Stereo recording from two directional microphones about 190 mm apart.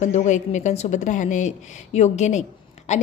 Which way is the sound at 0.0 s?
40° left (ahead or behind).